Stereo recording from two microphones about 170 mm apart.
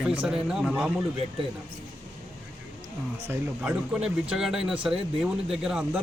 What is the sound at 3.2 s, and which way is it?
Speech, 15° right (ahead or behind).